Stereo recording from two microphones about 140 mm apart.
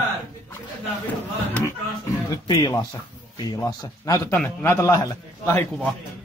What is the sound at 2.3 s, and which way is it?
A man's voice, 25° left (ahead or behind).